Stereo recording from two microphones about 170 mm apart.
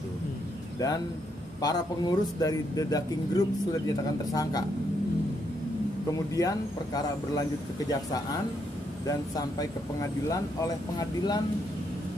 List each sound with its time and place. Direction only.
0.7 s a man's voice: 20° left (ahead or behind)
6.1 s speech: 20° left (ahead or behind)